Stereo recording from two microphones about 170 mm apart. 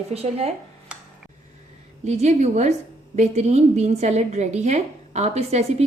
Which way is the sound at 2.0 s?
40° right (ahead or behind).